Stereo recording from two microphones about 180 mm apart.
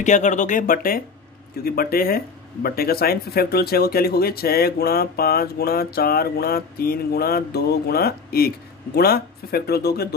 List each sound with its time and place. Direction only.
0.0 s speech: 40° left (ahead or behind); by 10.0 s 60° left (ahead or behind)